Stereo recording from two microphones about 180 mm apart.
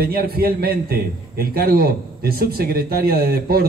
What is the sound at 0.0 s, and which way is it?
A man's voice, 55° right (ahead or behind).